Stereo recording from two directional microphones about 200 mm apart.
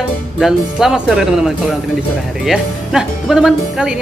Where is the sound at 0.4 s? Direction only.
Centre (ahead or behind).